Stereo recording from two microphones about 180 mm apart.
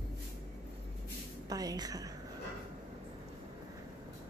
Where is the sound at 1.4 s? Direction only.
20° right (ahead or behind).